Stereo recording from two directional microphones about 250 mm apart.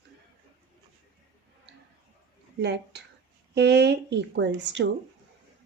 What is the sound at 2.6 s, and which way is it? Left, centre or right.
Speech, right.